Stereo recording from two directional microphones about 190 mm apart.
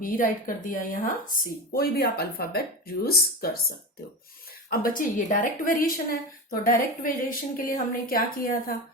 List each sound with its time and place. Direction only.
0.0 s a woman's voice: 45° left (ahead or behind)
4.7 s a woman's voice: 45° left (ahead or behind)